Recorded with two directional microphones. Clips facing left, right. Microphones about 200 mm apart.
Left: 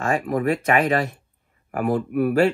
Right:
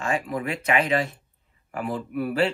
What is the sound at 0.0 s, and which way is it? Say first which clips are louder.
Speech: left 5 dB; 50° left (ahead or behind).